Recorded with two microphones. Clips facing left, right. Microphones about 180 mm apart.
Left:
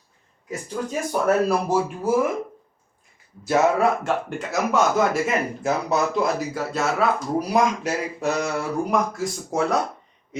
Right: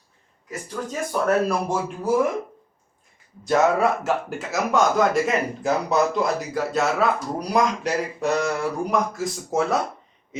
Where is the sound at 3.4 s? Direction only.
Centre (ahead or behind).